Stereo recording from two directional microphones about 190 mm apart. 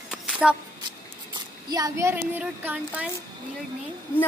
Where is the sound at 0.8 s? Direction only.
20° right (ahead or behind).